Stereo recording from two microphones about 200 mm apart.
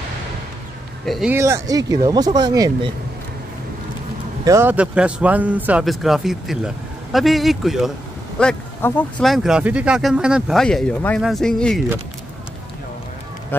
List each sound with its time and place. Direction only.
1.0 s speech: centre (ahead or behind)
1.3 s speech: 15° right (ahead or behind)
4.5 s a man's voice: 10° right (ahead or behind)
13.5 s speech: 10° left (ahead or behind)